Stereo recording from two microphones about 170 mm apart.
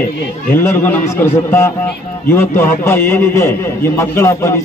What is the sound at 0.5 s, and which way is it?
A man's voice, 15° left (ahead or behind).